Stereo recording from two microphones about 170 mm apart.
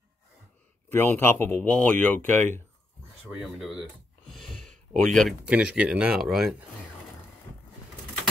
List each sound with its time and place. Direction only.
0.8 s speech: 10° left (ahead or behind)
3.3 s speech: centre (ahead or behind)
4.3 s a sound: centre (ahead or behind)
5.1 s speech: centre (ahead or behind)